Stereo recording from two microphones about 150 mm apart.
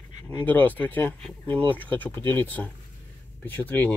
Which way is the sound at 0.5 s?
10° left (ahead or behind).